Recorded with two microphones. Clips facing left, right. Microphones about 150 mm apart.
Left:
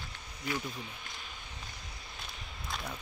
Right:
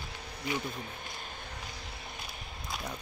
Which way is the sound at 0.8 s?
50° right (ahead or behind).